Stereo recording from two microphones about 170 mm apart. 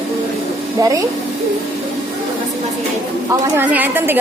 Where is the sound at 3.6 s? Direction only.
10° right (ahead or behind).